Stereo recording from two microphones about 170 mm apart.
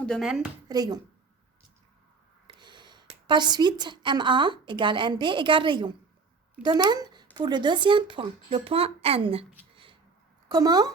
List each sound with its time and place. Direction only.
0.0 s speech: centre (ahead or behind)
0.7 s a woman's voice: 20° right (ahead or behind)
2.5 s a woman's voice: 25° right (ahead or behind)
9.7 s a sound: 30° right (ahead or behind)
10.5 s a woman's voice: 25° right (ahead or behind)